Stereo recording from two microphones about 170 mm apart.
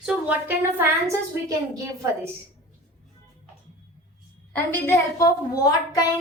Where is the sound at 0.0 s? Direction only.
10° right (ahead or behind).